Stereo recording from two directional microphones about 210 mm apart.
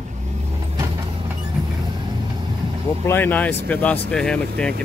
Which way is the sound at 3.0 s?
10° left (ahead or behind).